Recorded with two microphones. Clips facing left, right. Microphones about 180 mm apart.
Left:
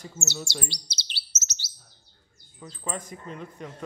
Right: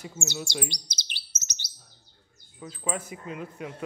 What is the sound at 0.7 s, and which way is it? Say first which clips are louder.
Chirp: right 1 dB; 15° right (ahead or behind).